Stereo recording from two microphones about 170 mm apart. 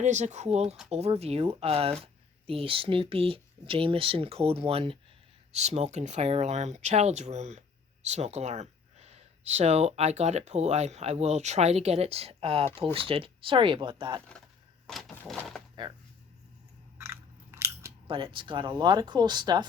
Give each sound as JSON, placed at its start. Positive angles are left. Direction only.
{"t": 0.0, "sound": "speech", "side_deg": -45}
{"t": 14.8, "sound": "a sound", "side_deg": 0}
{"t": 17.0, "sound": "biting", "side_deg": -15}
{"t": 18.1, "sound": "speech", "side_deg": -30}